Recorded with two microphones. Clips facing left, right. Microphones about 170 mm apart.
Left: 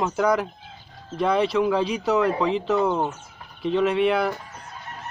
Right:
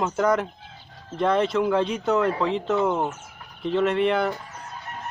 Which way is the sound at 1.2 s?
Centre (ahead or behind).